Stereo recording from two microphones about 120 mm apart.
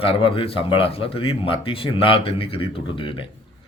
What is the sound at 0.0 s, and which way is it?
Speech, 50° left (ahead or behind).